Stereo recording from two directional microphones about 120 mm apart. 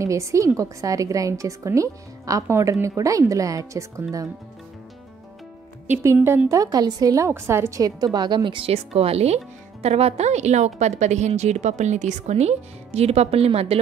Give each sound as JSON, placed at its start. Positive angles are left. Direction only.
{"t": 0.0, "sound": "a woman's voice", "side_deg": -25}
{"t": 5.9, "sound": "a woman's voice", "side_deg": -20}
{"t": 8.7, "sound": "speech", "side_deg": -60}